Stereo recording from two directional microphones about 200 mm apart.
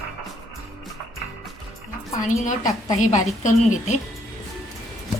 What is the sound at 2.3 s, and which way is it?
A woman's voice, 40° left (ahead or behind).